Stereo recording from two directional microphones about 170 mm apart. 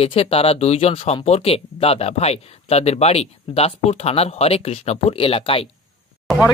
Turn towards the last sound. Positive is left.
turn(degrees=0)  # may be behind; listen again after turning